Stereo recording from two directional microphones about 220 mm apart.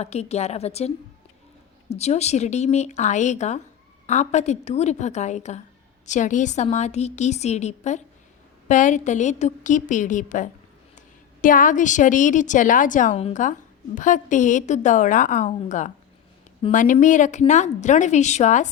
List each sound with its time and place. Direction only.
0.0 s a woman's voice: 30° left (ahead or behind)